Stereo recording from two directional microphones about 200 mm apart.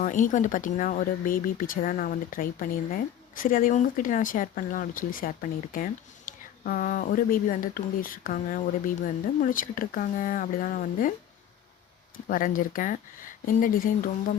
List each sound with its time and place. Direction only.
0.0 s speech: 40° left (ahead or behind)
12.1 s speech: 45° left (ahead or behind)